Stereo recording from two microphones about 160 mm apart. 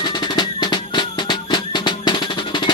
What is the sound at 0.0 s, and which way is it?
Music, 25° left (ahead or behind).